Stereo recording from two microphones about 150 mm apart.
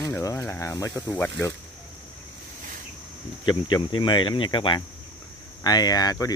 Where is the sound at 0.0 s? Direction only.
20° left (ahead or behind).